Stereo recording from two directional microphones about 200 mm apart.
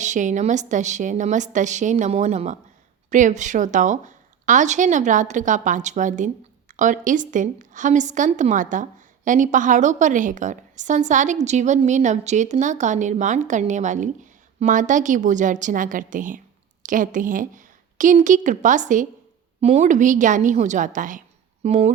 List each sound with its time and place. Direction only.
0.0 s a woman's voice: 40° right (ahead or behind)